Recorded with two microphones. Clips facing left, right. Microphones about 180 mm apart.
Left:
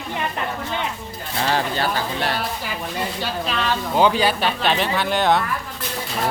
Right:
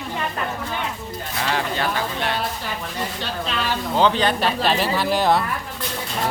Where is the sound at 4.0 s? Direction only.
10° left (ahead or behind).